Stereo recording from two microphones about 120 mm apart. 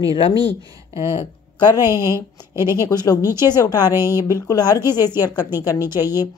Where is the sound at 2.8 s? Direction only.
30° left (ahead or behind).